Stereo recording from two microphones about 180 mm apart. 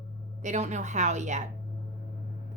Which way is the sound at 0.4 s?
40° right (ahead or behind).